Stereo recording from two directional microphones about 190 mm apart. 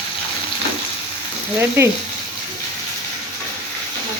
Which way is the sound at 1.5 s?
15° right (ahead or behind).